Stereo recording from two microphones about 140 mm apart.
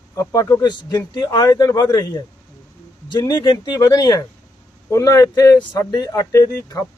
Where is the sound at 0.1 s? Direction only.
25° left (ahead or behind).